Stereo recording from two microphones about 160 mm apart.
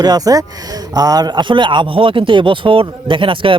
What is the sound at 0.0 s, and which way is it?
A man's voice, 25° right (ahead or behind).